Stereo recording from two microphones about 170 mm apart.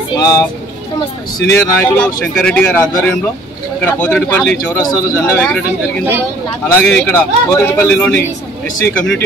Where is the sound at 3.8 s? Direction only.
10° left (ahead or behind).